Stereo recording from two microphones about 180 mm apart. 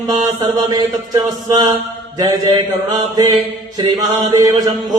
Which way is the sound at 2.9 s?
20° right (ahead or behind).